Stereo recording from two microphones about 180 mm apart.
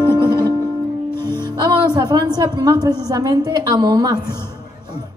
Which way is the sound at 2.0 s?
20° right (ahead or behind).